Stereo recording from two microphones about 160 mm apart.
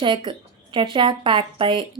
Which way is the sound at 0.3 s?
30° right (ahead or behind).